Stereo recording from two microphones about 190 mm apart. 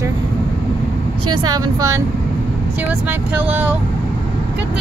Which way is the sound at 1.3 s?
20° right (ahead or behind).